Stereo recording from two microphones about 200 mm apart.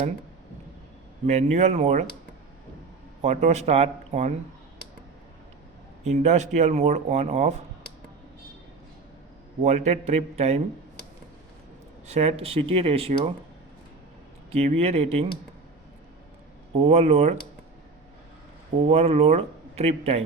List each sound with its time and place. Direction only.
1.3 s speech: 35° right (ahead or behind)
3.2 s speech: 35° right (ahead or behind)
6.1 s speech: 35° right (ahead or behind)
9.6 s speech: 35° right (ahead or behind)
12.0 s speech: 30° right (ahead or behind)
14.5 s speech: 30° right (ahead or behind)
16.8 s speech: 35° right (ahead or behind)
18.8 s speech: 30° right (ahead or behind)